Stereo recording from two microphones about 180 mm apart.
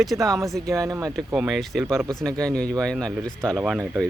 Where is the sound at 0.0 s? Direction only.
Centre (ahead or behind).